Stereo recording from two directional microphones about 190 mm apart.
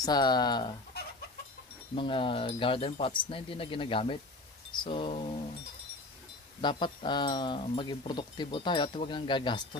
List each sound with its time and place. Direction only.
0.0 s speech: 20° left (ahead or behind)
2.0 s speech: 25° left (ahead or behind)
6.6 s speech: 25° left (ahead or behind)